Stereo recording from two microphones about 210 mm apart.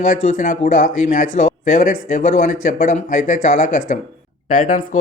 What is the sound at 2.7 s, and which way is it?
Speech, 40° left (ahead or behind).